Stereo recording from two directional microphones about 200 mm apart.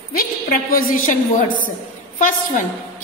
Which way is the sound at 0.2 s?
45° left (ahead or behind).